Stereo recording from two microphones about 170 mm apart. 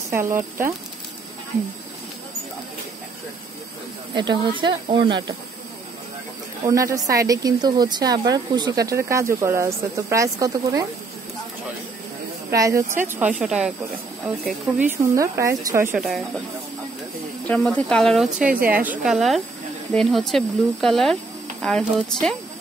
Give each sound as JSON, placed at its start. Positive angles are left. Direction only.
{"t": 0.1, "sound": "speech", "side_deg": -15}
{"t": 4.1, "sound": "speech", "side_deg": -25}
{"t": 6.6, "sound": "speech", "side_deg": -20}
{"t": 12.4, "sound": "speech", "side_deg": -20}
{"t": 14.8, "sound": "speech", "side_deg": -15}
{"t": 16.0, "sound": "speech", "side_deg": 0}
{"t": 17.5, "sound": "speech", "side_deg": 5}